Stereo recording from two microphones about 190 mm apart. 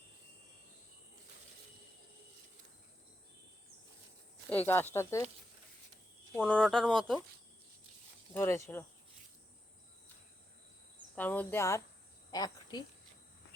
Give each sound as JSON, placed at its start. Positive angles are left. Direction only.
{"t": 4.4, "sound": "speech", "side_deg": 10}
{"t": 6.3, "sound": "speech", "side_deg": 5}
{"t": 8.3, "sound": "speech", "side_deg": 15}
{"t": 11.1, "sound": "speech", "side_deg": 10}